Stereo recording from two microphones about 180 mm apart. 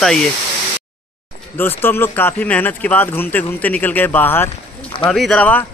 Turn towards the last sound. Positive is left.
turn(degrees=5)  # may be behind; listen again after turning